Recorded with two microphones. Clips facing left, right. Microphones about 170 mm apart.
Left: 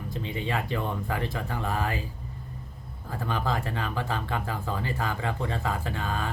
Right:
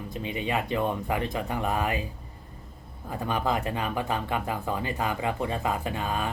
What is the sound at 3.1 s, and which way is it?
Speech, 20° right (ahead or behind).